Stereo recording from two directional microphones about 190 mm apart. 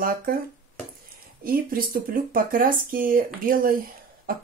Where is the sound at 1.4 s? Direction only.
50° right (ahead or behind).